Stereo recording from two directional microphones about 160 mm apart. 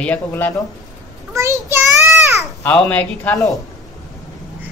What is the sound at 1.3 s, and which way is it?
Speech, 20° right (ahead or behind).